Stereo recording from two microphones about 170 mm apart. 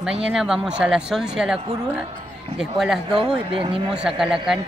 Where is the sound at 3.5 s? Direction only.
30° right (ahead or behind).